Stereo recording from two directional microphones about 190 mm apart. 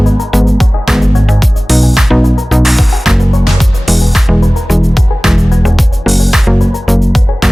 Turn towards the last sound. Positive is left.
turn(degrees=0)  # may be behind; listen again after turning